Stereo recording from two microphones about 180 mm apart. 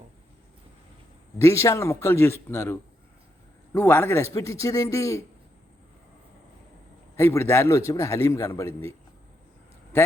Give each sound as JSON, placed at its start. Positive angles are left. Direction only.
{"t": 1.4, "sound": "a man's voice", "side_deg": 15}
{"t": 7.2, "sound": "a man's voice", "side_deg": 15}